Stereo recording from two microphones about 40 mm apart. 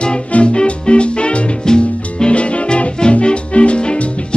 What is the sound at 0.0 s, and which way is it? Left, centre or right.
Music, left.